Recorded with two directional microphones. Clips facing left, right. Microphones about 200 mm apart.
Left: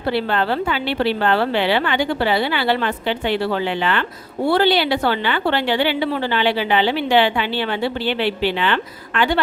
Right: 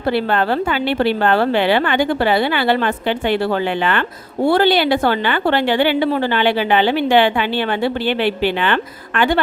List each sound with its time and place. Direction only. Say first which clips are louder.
0.1 s a woman's voice: right 3 dB; 50° right (ahead or behind)